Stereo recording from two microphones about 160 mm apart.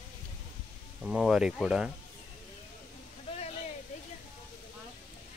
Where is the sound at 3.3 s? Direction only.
35° left (ahead or behind).